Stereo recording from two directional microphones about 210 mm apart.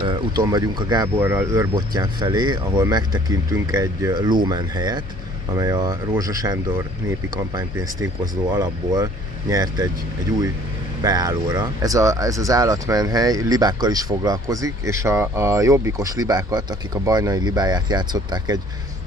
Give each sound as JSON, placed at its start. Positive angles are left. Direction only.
{"t": 0.0, "sound": "speech", "side_deg": -20}
{"t": 11.0, "sound": "speech", "side_deg": -15}